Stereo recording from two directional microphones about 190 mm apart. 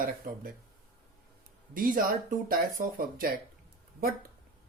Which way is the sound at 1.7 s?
45° right (ahead or behind).